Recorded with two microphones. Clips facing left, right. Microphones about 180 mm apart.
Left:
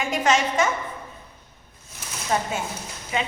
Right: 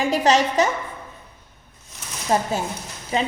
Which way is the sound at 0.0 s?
35° right (ahead or behind).